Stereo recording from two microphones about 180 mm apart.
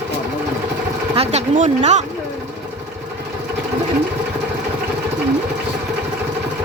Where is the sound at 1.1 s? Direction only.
40° right (ahead or behind).